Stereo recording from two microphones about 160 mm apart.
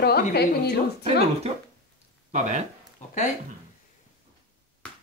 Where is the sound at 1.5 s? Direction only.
40° right (ahead or behind).